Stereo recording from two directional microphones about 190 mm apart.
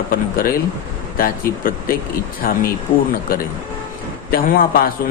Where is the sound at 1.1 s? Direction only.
50° left (ahead or behind).